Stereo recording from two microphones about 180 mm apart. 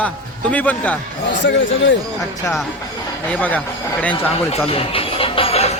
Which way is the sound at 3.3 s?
10° left (ahead or behind).